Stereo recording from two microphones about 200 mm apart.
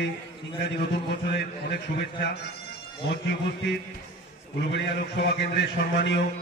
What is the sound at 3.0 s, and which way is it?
A man's voice, 55° left (ahead or behind).